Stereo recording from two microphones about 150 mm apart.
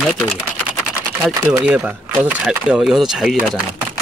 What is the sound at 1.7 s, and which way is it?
A man's voice, 10° right (ahead or behind).